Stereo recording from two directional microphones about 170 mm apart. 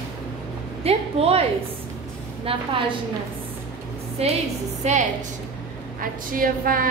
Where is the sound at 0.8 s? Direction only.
35° right (ahead or behind).